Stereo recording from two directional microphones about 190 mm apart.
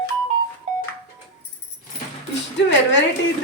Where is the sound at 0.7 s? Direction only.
40° right (ahead or behind).